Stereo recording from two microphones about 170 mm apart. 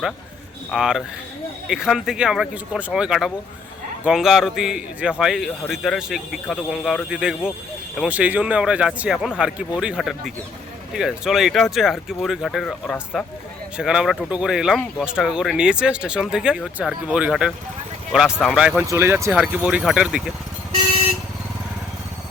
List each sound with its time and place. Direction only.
0.7 s speech: 5° right (ahead or behind)
18.9 s speech: 15° right (ahead or behind)